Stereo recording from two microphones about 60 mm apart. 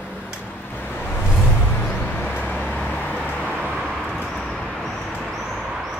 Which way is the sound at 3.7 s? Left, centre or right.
Centre.